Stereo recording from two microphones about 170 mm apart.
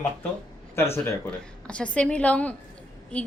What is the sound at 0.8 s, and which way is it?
A woman's voice, 15° left (ahead or behind).